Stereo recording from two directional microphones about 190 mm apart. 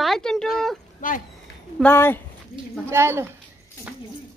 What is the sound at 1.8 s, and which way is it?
Speech, 10° left (ahead or behind).